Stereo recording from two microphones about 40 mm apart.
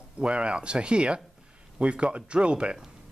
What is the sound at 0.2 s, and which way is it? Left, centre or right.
Speech, right.